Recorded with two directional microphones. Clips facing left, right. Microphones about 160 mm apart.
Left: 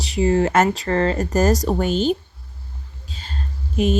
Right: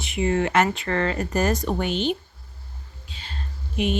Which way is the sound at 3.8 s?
40° left (ahead or behind).